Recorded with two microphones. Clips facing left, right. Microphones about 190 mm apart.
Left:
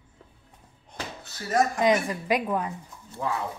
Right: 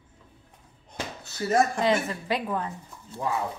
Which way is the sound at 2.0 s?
15° left (ahead or behind).